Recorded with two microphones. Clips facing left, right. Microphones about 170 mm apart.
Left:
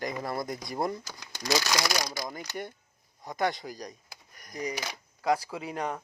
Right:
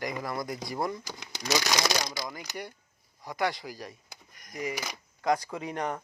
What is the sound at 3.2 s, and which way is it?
Speech, 20° left (ahead or behind).